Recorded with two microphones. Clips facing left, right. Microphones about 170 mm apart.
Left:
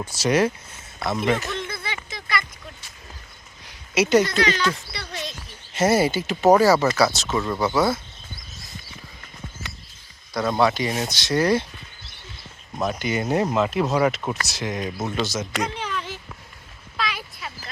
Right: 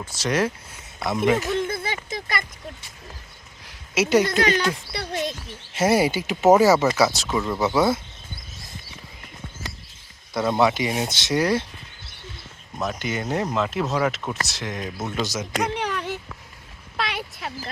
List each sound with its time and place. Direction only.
0.0 s speech: 10° left (ahead or behind)
0.9 s speech: 15° right (ahead or behind)
1.6 s a sound: 45° right (ahead or behind)
3.7 s a sound: 5° right (ahead or behind)
4.3 s speech: 50° right (ahead or behind)
4.9 s a sound: 50° right (ahead or behind)
5.7 s speech: 10° right (ahead or behind)
7.3 s speech: centre (ahead or behind)
10.6 s speech: 15° right (ahead or behind)
12.8 s speech: centre (ahead or behind)
15.2 s speech: 10° right (ahead or behind)
15.6 s a sound: 70° right (ahead or behind)